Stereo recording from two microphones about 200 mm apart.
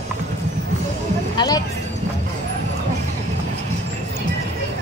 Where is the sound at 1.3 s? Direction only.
20° left (ahead or behind).